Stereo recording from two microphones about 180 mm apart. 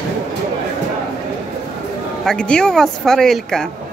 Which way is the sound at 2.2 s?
5° left (ahead or behind).